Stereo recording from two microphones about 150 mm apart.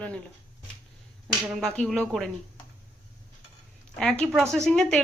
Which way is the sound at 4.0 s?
5° left (ahead or behind).